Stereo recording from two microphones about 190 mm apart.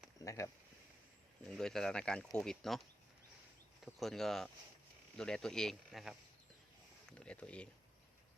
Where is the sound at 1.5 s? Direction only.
5° left (ahead or behind).